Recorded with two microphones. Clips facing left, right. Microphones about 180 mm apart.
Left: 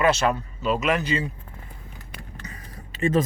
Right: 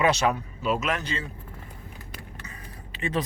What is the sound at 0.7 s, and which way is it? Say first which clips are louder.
Speech: left 5 dB; 5° left (ahead or behind).